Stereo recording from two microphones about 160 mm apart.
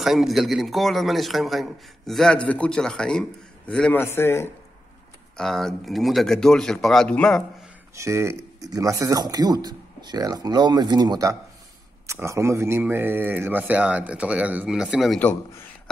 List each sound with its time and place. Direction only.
0.0 s a man's voice: centre (ahead or behind); by 4.5 s 15° left (ahead or behind)
5.4 s a man's voice: centre (ahead or behind)
7.9 s speech: 15° right (ahead or behind); by 15.2 s centre (ahead or behind)